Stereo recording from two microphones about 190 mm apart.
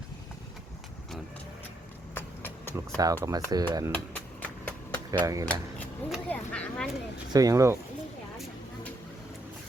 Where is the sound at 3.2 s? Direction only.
20° right (ahead or behind).